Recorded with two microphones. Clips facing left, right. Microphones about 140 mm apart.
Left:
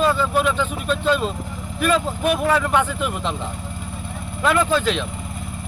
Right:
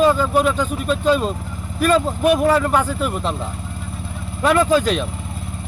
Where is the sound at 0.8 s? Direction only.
5° right (ahead or behind).